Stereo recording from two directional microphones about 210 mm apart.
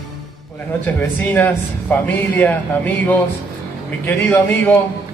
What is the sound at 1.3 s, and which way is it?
A man's voice, 10° left (ahead or behind).